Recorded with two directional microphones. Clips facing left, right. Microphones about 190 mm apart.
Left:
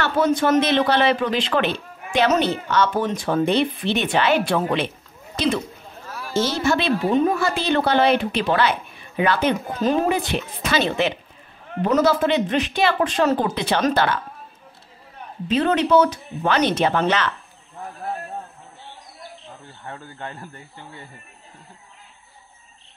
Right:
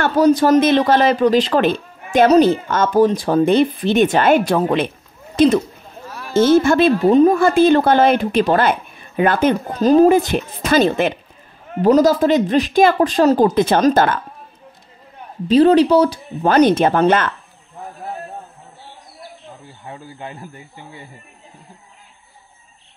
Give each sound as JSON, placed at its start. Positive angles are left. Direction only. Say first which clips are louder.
{"t": 0.0, "sound": "a woman's voice", "louder": "right 6 dB", "side_deg": -35}
{"t": 7.3, "sound": "a woman's voice", "louder": "right 9 dB", "side_deg": -50}
{"t": 11.8, "sound": "speech", "louder": "right 6 dB", "side_deg": -35}
{"t": 15.4, "sound": "speech", "louder": "right 9 dB", "side_deg": -35}
{"t": 16.4, "sound": "a woman's voice", "louder": "right 7 dB", "side_deg": -45}
{"t": 19.8, "sound": "speech", "louder": "right 2 dB", "side_deg": -10}